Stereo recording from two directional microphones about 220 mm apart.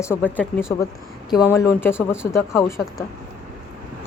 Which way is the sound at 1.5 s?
10° left (ahead or behind).